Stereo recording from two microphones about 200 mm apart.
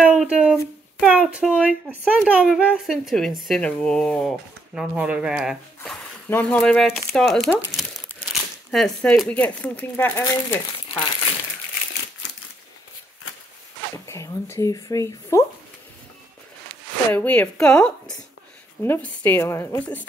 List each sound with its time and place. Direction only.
0.0 s a sound: 5° right (ahead or behind)
1.0 s speech: 5° right (ahead or behind)
8.3 s a sound: centre (ahead or behind)
9.2 s speech: 5° left (ahead or behind)
14.0 s speech: 15° left (ahead or behind)
17.1 s speech: 5° left (ahead or behind)